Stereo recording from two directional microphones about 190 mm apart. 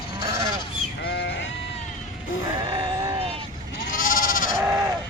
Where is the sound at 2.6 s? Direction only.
25° right (ahead or behind).